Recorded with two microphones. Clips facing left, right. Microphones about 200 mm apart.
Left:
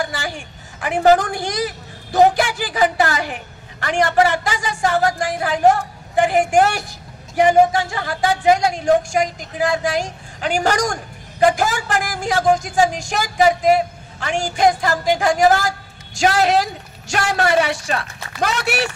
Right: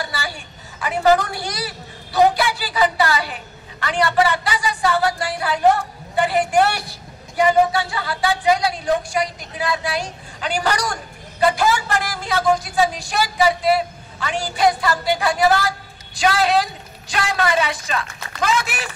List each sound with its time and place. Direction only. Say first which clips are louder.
0.8 s a woman's voice: left 2 dB; 50° left (ahead or behind)
18.4 s speech: left 2 dB; 65° left (ahead or behind)